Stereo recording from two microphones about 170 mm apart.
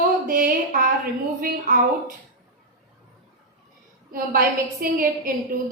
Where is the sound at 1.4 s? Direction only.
55° right (ahead or behind).